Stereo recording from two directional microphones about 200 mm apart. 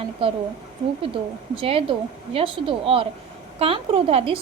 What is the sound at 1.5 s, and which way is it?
A woman's voice, 25° right (ahead or behind).